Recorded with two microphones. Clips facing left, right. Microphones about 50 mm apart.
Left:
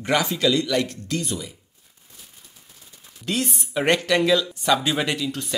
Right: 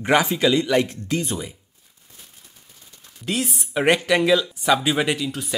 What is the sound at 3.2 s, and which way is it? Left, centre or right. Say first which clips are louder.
Speech: even; centre.